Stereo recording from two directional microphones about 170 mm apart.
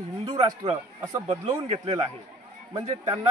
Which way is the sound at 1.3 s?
35° right (ahead or behind).